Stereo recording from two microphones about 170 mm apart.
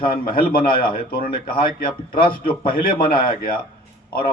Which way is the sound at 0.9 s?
60° left (ahead or behind).